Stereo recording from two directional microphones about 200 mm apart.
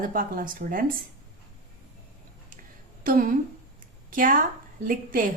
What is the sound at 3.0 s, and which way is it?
Speech, 45° right (ahead or behind).